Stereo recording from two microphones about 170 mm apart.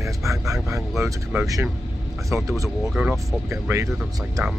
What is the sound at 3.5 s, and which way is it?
Speech, 15° right (ahead or behind).